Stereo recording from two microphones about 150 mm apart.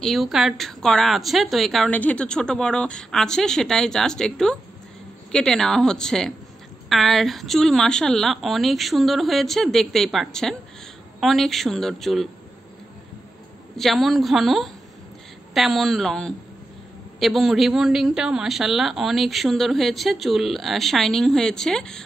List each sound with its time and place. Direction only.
0.0 s a woman's voice: centre (ahead or behind)
13.7 s a woman's voice: centre (ahead or behind)